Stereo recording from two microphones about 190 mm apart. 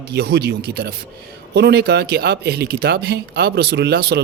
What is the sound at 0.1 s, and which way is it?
Speech, 60° right (ahead or behind).